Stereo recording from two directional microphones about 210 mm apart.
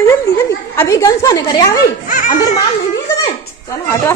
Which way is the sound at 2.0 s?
40° left (ahead or behind).